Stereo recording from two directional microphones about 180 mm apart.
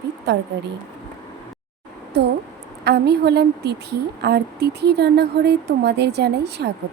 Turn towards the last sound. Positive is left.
turn(degrees=-65)  # may be behind; listen again after turning